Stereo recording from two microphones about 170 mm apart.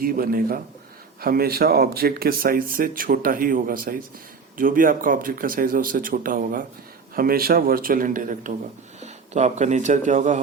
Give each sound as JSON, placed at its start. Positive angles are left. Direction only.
{"t": 0.0, "sound": "speech", "side_deg": -60}